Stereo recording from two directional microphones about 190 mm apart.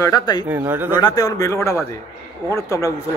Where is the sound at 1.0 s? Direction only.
20° left (ahead or behind).